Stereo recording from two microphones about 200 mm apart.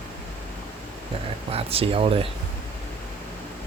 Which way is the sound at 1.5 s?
30° right (ahead or behind).